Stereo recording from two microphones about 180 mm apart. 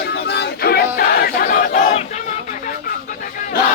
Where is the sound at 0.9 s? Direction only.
60° left (ahead or behind).